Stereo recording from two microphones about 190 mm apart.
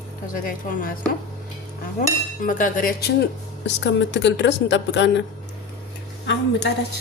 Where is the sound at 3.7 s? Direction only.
70° left (ahead or behind).